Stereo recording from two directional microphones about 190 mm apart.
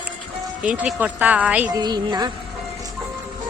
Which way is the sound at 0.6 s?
5° right (ahead or behind).